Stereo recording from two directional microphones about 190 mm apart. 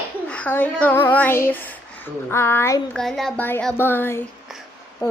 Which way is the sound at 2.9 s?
Centre (ahead or behind).